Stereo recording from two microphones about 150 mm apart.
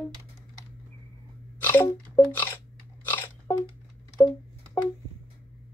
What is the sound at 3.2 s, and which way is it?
Biting, 25° left (ahead or behind).